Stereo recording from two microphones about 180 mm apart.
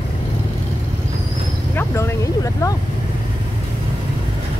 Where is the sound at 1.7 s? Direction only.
15° left (ahead or behind).